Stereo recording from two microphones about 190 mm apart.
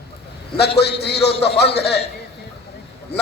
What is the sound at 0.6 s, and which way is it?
Speech, 60° left (ahead or behind).